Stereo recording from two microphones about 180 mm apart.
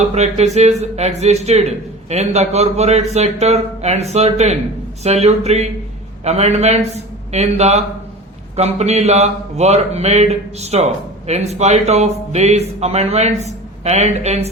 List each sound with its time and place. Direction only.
0.1 s speech: 40° right (ahead or behind)